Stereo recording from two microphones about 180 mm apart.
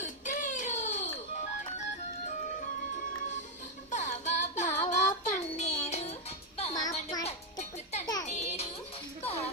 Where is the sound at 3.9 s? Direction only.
40° left (ahead or behind).